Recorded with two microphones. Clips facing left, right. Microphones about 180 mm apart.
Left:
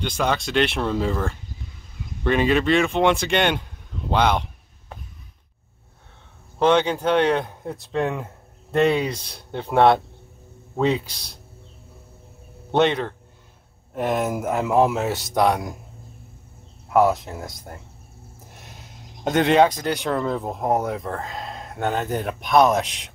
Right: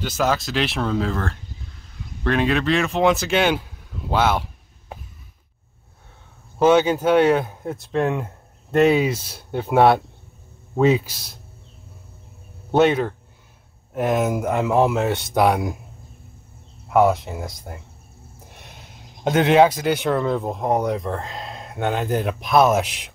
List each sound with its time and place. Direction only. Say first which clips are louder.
0.0 s speech: right 2 dB; 5° right (ahead or behind)
6.6 s speech: right 3 dB; 5° right (ahead or behind)
12.7 s speech: right 3 dB; 5° right (ahead or behind)
16.9 s speech: right 1 dB; centre (ahead or behind)
19.2 s speech: right 2 dB; centre (ahead or behind)